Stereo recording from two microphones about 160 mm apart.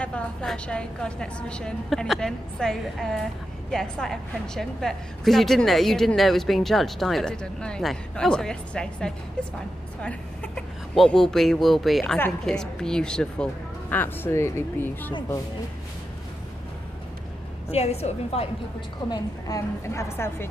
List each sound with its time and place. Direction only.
0.0 s a woman's voice: 5° left (ahead or behind)
17.6 s a woman's voice: 40° left (ahead or behind)
19.0 s a woman's voice: 25° left (ahead or behind)